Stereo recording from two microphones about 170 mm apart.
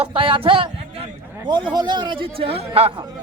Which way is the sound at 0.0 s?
30° right (ahead or behind).